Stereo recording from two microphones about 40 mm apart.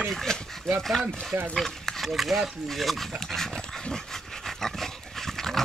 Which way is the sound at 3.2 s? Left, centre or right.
Centre.